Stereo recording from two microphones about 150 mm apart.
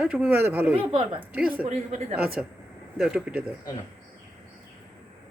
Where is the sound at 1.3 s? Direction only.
10° right (ahead or behind).